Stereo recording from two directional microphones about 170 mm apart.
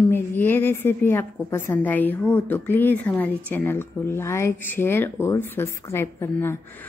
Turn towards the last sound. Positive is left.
turn(degrees=10)  # may be behind; listen again after turning